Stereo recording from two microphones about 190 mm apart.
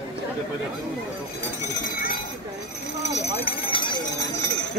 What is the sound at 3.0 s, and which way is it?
Clip-clop, 35° left (ahead or behind).